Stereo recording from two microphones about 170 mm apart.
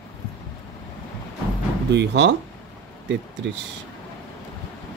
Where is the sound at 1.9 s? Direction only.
90° right.